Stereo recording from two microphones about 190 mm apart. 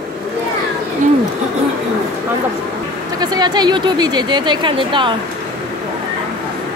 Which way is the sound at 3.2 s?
20° right (ahead or behind).